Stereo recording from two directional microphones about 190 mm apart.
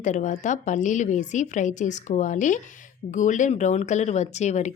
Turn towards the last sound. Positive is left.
turn(degrees=35)  # may be behind; listen again after turning